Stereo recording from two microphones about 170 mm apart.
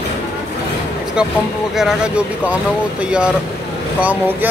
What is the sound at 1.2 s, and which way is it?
Speech, 5° right (ahead or behind).